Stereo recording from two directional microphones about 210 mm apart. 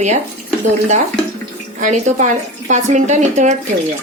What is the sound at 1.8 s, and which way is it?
Speech, 35° right (ahead or behind).